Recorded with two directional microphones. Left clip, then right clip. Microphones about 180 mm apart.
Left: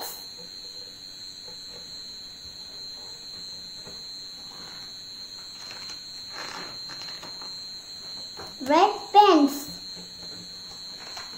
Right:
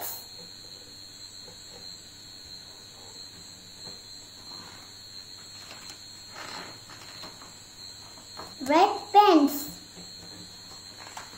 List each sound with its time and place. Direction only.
8.6 s a child's voice: 5° right (ahead or behind)